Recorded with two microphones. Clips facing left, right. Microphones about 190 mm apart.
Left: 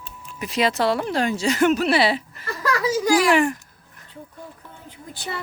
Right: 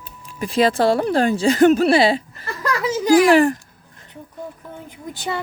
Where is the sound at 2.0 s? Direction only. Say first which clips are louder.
Right 4 dB; 45° right (ahead or behind).